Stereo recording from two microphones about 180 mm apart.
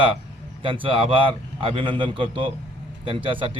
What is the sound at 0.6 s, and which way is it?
A man's voice, 30° right (ahead or behind).